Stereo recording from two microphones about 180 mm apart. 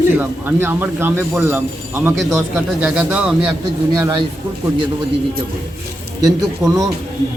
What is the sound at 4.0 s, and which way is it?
Speech, 25° right (ahead or behind).